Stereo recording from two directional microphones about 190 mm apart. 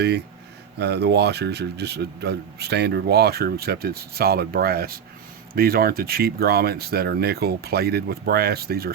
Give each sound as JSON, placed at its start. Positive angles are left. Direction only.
{"t": 0.8, "sound": "speech", "side_deg": -60}